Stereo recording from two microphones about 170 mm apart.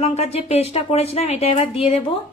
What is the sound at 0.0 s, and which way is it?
Speech, 40° left (ahead or behind).